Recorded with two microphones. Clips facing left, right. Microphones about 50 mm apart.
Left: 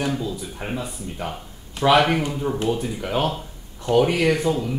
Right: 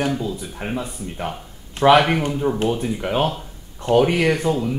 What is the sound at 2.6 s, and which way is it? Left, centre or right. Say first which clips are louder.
Speech: right 2 dB; right.